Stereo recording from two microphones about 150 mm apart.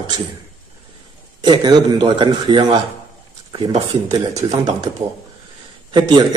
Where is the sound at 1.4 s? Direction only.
30° right (ahead or behind).